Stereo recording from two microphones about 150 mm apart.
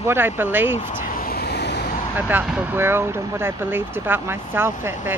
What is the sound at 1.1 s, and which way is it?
Vehicle, 80° left.